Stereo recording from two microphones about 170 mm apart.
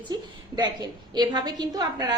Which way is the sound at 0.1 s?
25° right (ahead or behind).